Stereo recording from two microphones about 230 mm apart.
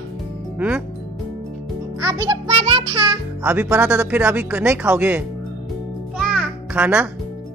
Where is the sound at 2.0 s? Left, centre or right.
Centre.